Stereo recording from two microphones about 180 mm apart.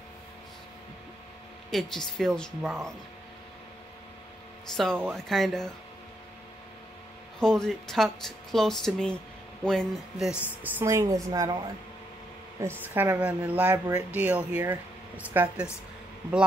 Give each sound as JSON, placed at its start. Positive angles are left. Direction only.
{"t": 1.7, "sound": "speech", "side_deg": 0}
{"t": 4.7, "sound": "speech", "side_deg": 5}
{"t": 7.3, "sound": "speech", "side_deg": 5}
{"t": 10.6, "sound": "speech", "side_deg": -15}
{"t": 12.8, "sound": "speech", "side_deg": -10}